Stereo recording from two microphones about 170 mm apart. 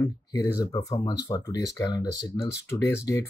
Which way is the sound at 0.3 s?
20° left (ahead or behind).